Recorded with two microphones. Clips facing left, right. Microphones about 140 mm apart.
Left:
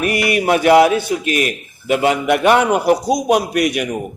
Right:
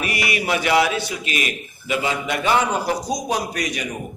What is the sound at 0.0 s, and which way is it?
A man's voice, 55° left (ahead or behind).